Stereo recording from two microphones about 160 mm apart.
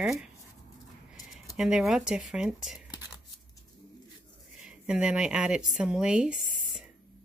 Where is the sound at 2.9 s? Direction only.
25° left (ahead or behind).